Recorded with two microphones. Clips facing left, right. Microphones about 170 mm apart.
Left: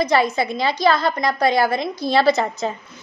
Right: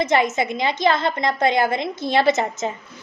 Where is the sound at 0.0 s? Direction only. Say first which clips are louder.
Left 1 dB; 20° right (ahead or behind).